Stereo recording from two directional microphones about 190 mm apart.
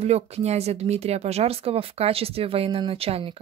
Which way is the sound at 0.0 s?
35° right (ahead or behind).